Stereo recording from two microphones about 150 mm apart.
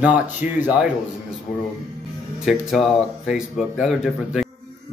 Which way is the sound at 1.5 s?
75° left (ahead or behind).